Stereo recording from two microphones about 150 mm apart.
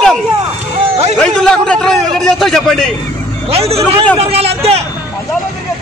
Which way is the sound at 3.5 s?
40° right (ahead or behind).